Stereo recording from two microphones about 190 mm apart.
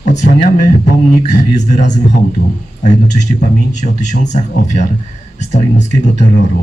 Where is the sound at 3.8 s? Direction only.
40° left (ahead or behind).